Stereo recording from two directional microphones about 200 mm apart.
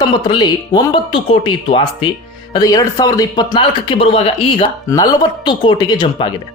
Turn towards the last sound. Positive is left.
turn(degrees=25)  # may be behind; listen again after turning